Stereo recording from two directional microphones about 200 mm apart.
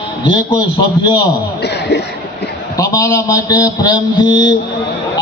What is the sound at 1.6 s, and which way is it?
Music, 55° left (ahead or behind).